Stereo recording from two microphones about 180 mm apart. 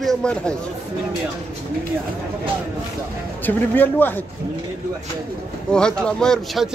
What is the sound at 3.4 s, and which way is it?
Speech, 10° left (ahead or behind).